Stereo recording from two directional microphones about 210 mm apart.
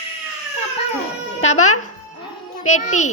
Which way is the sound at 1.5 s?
35° left (ahead or behind).